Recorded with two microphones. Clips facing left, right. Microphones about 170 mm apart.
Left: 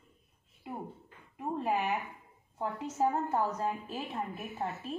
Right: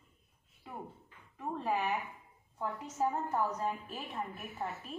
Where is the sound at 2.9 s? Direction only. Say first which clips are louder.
Left 3 dB; 25° left (ahead or behind).